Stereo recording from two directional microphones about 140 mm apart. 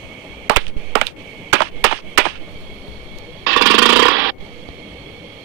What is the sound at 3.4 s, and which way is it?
Jackhammer, 20° right (ahead or behind).